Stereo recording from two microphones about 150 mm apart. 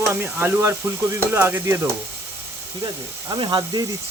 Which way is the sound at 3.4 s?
30° right (ahead or behind).